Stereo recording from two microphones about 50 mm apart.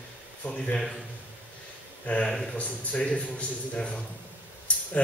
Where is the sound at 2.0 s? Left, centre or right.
Left.